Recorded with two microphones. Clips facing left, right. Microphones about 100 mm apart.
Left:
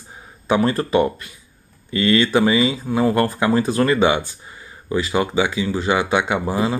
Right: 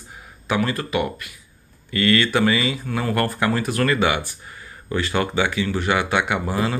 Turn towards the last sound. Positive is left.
turn(degrees=20)  # may be behind; listen again after turning